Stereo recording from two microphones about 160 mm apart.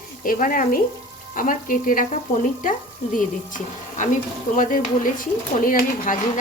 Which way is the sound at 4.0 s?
55° left (ahead or behind).